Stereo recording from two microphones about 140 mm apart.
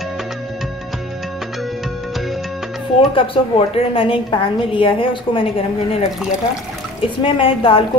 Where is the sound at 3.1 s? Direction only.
40° left (ahead or behind).